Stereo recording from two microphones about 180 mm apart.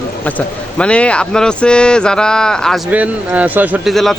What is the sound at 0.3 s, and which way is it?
A man's voice, 5° left (ahead or behind).